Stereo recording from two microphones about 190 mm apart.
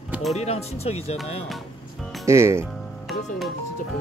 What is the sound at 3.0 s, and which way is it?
Speech, centre (ahead or behind).